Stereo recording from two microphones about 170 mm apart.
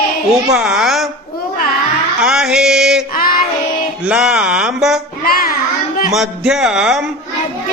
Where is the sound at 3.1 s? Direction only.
55° left (ahead or behind).